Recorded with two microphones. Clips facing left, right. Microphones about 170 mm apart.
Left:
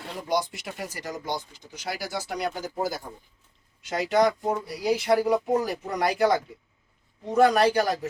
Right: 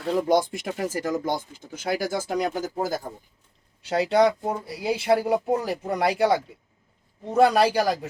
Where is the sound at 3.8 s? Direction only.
30° right (ahead or behind).